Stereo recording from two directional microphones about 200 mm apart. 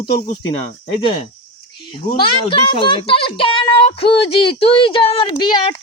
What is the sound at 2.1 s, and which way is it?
Speech, 25° left (ahead or behind).